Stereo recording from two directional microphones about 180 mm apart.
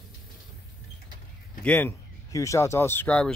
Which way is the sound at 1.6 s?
10° left (ahead or behind).